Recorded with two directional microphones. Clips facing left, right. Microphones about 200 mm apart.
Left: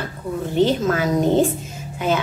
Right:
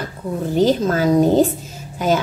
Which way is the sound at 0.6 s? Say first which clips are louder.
Right 2 dB; 35° right (ahead or behind).